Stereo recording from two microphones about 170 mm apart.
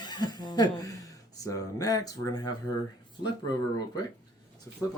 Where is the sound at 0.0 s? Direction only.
25° left (ahead or behind).